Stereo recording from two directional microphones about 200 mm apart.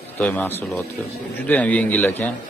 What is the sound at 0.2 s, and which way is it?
Speech, 10° left (ahead or behind).